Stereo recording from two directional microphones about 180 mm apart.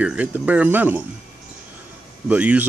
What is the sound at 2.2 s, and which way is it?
Speech, 10° right (ahead or behind).